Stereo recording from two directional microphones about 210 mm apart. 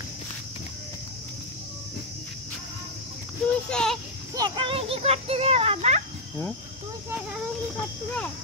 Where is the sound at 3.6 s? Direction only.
5° left (ahead or behind).